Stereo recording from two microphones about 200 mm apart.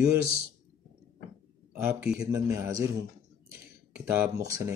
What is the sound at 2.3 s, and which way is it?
A man's voice, 15° right (ahead or behind).